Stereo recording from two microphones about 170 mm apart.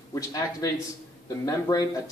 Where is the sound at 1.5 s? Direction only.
20° left (ahead or behind).